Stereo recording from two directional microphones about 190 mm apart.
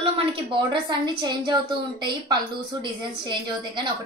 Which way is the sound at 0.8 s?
25° right (ahead or behind).